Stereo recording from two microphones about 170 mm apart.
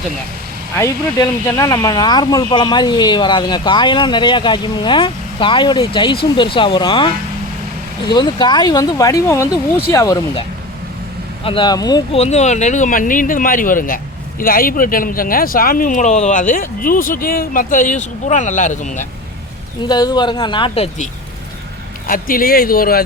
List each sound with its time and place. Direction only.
0.8 s speech: 15° left (ahead or behind)
8.1 s speech: 25° left (ahead or behind)
11.4 s speech: 30° left (ahead or behind)
12.1 s speech: 40° left (ahead or behind)
19.8 s speech: 25° left (ahead or behind)
22.0 s speech: 55° left (ahead or behind)